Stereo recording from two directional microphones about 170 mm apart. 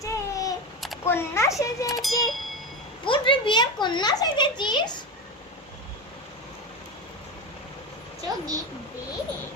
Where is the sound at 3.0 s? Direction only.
30° left (ahead or behind).